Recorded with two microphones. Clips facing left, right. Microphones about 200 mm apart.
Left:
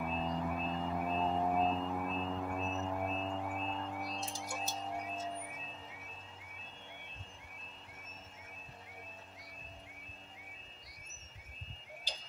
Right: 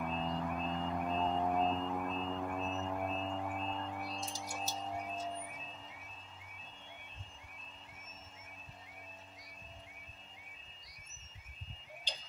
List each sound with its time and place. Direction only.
0.0 s music: 5° left (ahead or behind)